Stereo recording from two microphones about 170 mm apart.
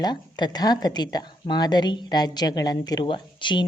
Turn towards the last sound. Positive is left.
turn(degrees=30)  # may be behind; listen again after turning